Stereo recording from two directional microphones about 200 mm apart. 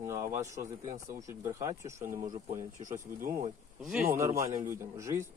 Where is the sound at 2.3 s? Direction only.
40° right (ahead or behind).